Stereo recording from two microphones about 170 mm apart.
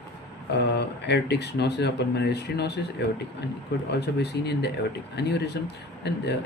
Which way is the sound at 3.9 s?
75° left (ahead or behind).